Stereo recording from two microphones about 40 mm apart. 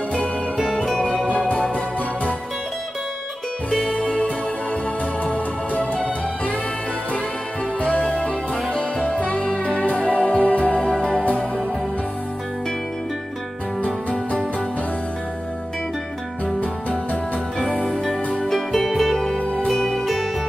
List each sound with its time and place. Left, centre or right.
1.3 s music: left
3.7 s music: centre
5.2 s music: left
9.0 s music: left
10.9 s music: left
11.2 s music: left
17.6 s music: centre
19.3 s music: left
19.7 s music: centre